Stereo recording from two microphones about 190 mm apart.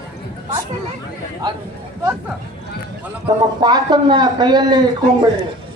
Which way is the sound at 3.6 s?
20° right (ahead or behind).